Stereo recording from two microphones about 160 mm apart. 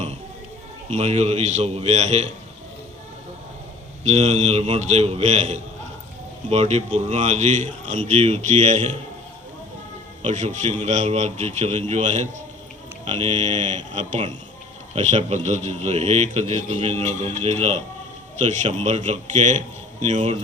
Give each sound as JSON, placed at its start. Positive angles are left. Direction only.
{"t": 0.9, "sound": "a man's voice", "side_deg": -45}
{"t": 4.0, "sound": "a man's voice", "side_deg": -45}
{"t": 10.2, "sound": "a man's voice", "side_deg": -50}